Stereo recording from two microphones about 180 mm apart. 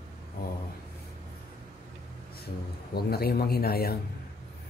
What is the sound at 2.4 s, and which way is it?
Speech, 60° left (ahead or behind).